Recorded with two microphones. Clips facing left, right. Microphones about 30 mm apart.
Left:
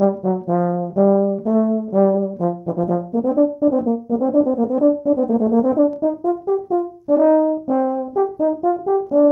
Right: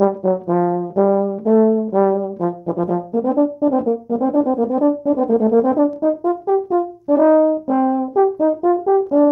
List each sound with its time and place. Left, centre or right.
0.0 s brass instrument: right
7.1 s french horn: right